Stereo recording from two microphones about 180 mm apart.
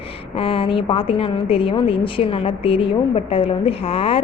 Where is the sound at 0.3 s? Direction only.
30° left (ahead or behind).